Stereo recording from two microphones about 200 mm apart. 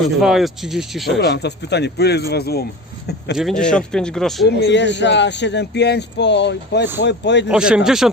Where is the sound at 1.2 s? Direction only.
55° left (ahead or behind).